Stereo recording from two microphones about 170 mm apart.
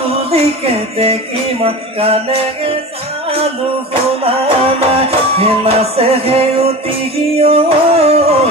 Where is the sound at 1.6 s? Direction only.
35° right (ahead or behind).